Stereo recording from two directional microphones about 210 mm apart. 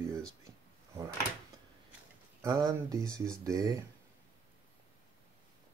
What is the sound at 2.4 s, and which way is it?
Speech, 15° right (ahead or behind).